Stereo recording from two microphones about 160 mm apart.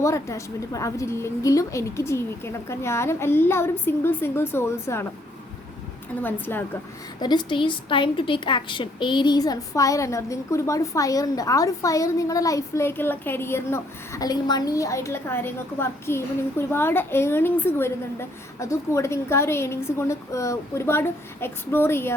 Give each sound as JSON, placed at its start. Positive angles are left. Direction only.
{"t": 0.0, "sound": "a woman's voice", "side_deg": 20}
{"t": 6.2, "sound": "a woman's voice", "side_deg": 10}
{"t": 7.2, "sound": "a woman's voice", "side_deg": 25}